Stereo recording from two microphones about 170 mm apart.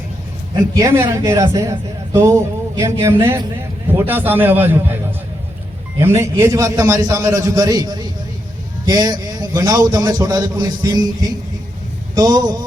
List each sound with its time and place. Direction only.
0.7 s a man's voice: 15° right (ahead or behind)
2.1 s a sound: 20° right (ahead or behind)
3.0 s a man's voice: 15° right (ahead or behind)
6.0 s a man's voice: 15° right (ahead or behind)